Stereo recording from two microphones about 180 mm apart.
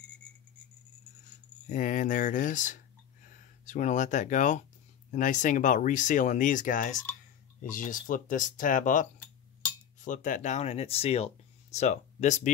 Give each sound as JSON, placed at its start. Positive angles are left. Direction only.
{"t": 1.7, "sound": "speech", "side_deg": 45}